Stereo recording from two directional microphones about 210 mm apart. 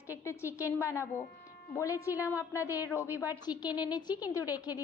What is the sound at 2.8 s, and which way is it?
A woman's voice, 15° left (ahead or behind).